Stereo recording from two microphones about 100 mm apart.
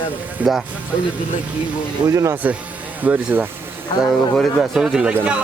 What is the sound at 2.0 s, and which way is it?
Speech, 30° right (ahead or behind).